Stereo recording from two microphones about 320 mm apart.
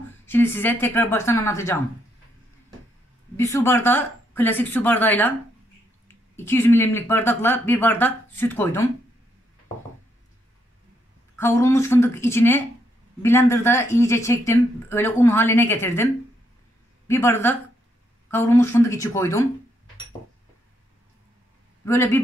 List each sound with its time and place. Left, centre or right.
0.3 s speech: centre
3.3 s speech: centre
6.3 s speech: centre
11.3 s speech: centre
17.1 s speech: centre
21.8 s speech: centre